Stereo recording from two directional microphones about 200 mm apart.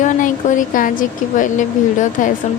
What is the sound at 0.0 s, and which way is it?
A woman's voice, 40° left (ahead or behind).